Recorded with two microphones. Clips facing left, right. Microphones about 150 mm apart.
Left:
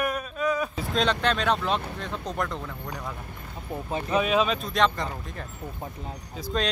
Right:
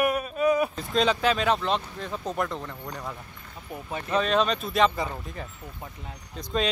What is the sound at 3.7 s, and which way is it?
Speech, 30° left (ahead or behind).